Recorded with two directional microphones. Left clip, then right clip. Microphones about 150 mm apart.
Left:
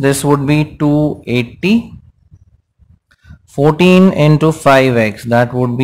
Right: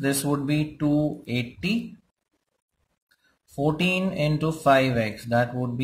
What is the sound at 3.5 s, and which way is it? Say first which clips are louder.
Speech: left 15 dB; 40° left (ahead or behind).